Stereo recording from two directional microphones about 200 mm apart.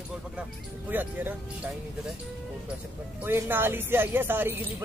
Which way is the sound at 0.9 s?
10° right (ahead or behind).